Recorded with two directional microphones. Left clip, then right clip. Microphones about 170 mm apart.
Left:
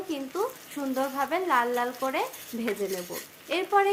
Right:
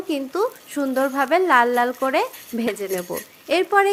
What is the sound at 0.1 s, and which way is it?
A woman's voice, 40° right (ahead or behind).